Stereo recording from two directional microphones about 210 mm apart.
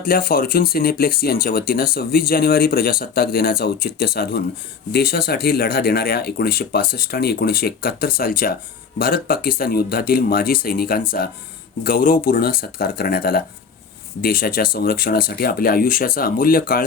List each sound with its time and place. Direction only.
0.0 s speech: 45° left (ahead or behind)